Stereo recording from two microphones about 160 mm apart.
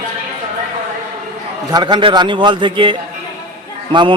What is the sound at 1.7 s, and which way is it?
A man's voice, 25° right (ahead or behind).